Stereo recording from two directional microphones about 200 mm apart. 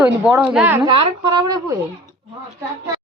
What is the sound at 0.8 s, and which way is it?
Speech, 25° right (ahead or behind).